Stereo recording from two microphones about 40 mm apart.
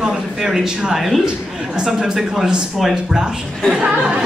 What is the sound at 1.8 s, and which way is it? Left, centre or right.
Speech, centre.